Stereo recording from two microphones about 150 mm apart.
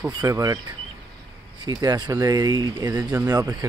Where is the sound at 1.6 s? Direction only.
25° right (ahead or behind).